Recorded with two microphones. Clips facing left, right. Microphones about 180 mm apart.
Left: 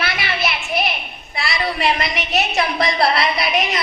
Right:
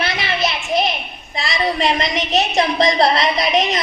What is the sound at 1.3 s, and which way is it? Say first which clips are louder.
A woman's voice: right 3 dB; 20° right (ahead or behind).